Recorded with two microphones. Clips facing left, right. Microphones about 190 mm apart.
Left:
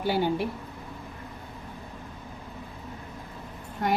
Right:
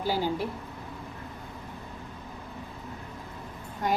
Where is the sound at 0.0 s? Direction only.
65° left (ahead or behind).